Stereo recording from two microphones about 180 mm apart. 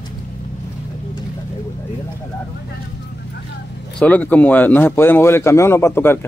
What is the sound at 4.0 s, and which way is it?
Speech, 10° left (ahead or behind).